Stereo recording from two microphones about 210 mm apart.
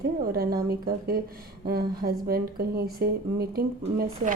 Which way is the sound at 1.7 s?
45° right (ahead or behind).